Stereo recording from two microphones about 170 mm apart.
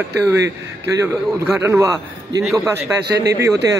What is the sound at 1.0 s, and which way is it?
A man's voice, 15° right (ahead or behind).